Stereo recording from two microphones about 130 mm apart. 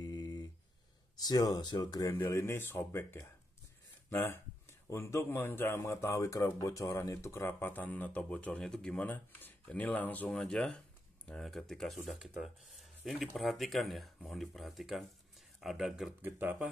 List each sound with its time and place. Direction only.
0.0 s a sound: 30° left (ahead or behind)
1.2 s speech: 30° left (ahead or behind); by 16.2 s centre (ahead or behind)
16.2 s speech: 15° right (ahead or behind)